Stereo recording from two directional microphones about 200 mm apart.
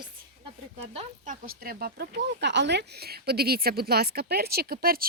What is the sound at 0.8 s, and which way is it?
Speech, 35° right (ahead or behind).